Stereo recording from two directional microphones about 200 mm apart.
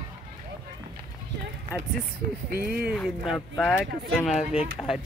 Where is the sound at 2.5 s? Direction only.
50° right (ahead or behind).